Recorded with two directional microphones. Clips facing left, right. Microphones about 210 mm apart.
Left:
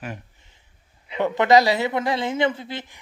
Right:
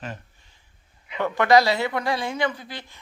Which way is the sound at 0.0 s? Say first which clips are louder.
Left 2 dB; 15° left (ahead or behind).